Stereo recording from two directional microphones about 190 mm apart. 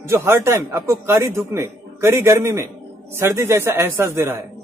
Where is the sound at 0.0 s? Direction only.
15° right (ahead or behind).